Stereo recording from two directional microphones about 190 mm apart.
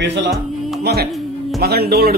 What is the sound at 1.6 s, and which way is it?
Speech, 55° right (ahead or behind).